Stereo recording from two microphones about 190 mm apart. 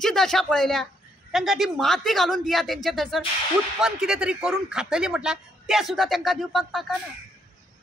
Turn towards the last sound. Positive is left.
turn(degrees=0)  # may be behind; listen again after turning